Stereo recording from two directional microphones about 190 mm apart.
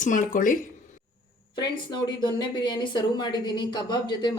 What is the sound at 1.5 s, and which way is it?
Speech, 25° left (ahead or behind).